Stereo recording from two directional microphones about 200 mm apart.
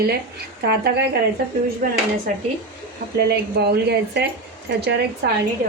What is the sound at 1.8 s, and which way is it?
Speech, 40° right (ahead or behind).